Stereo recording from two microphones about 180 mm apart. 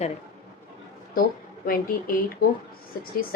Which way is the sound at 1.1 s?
55° left (ahead or behind).